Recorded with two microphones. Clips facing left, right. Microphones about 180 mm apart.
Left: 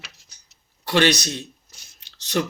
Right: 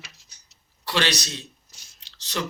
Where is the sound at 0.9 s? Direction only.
50° left (ahead or behind).